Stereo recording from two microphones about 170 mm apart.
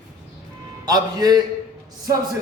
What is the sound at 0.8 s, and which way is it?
Speech, 25° right (ahead or behind).